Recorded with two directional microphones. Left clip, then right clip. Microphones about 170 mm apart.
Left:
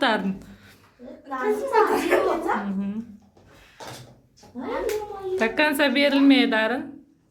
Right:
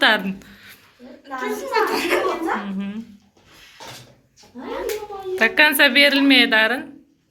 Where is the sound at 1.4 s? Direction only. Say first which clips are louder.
Left 1 dB; 65° left (ahead or behind).